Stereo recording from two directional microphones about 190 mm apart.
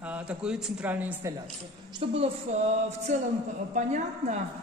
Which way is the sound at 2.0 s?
30° right (ahead or behind).